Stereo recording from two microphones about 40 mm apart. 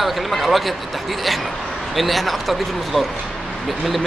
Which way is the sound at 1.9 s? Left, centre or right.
Centre.